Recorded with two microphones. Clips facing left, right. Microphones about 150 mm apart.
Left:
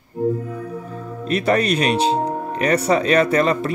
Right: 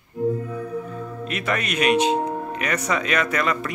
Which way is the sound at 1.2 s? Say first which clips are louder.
Left 9 dB; 35° left (ahead or behind).